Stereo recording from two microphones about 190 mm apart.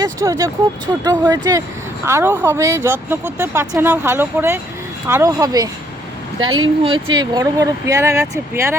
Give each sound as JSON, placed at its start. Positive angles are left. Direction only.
{"t": 0.0, "sound": "speech", "side_deg": -15}